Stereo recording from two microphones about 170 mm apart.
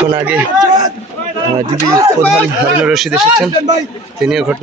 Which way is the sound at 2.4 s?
5° right (ahead or behind).